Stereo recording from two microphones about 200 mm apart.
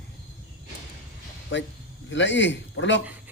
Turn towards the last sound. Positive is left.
turn(degrees=65)  # may be behind; listen again after turning